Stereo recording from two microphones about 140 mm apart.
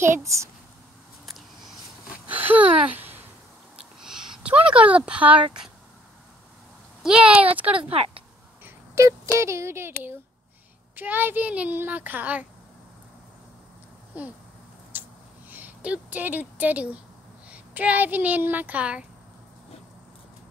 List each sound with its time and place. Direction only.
0.2 s a child's voice: 20° right (ahead or behind)
2.2 s a sound: 10° right (ahead or behind)
7.0 s speech: 5° right (ahead or behind)
7.9 s speech: 45° right (ahead or behind)
8.6 s speech: 20° right (ahead or behind)
11.0 s speech: 15° right (ahead or behind)
14.9 s a sound: 15° right (ahead or behind)
15.5 s speech: 10° right (ahead or behind)